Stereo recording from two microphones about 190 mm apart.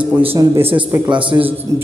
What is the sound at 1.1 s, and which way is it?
Speech, 25° right (ahead or behind).